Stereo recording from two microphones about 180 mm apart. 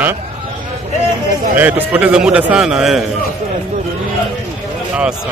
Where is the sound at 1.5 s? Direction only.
10° right (ahead or behind).